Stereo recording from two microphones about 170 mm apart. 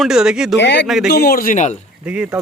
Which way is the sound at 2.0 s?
10° right (ahead or behind).